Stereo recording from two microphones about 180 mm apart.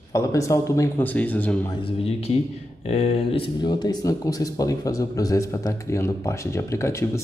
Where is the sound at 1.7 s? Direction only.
30° left (ahead or behind).